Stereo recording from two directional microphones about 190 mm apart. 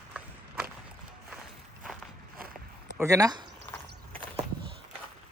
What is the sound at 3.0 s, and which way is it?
Speech, 15° right (ahead or behind).